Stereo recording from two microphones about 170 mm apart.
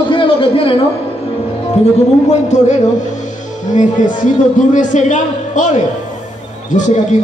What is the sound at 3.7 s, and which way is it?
A man's voice, 45° left (ahead or behind).